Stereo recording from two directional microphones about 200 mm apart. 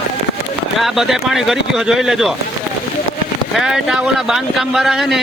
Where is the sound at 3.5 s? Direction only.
Centre (ahead or behind).